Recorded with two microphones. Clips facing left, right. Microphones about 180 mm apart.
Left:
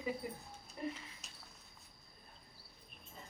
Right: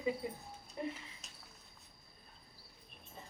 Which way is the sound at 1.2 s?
Centre (ahead or behind).